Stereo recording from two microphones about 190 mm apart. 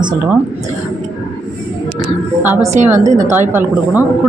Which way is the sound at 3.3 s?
10° right (ahead or behind).